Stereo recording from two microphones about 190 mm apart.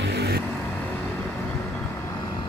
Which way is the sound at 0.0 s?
60° right (ahead or behind).